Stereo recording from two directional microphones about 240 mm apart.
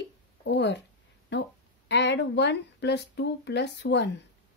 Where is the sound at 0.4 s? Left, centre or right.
Left.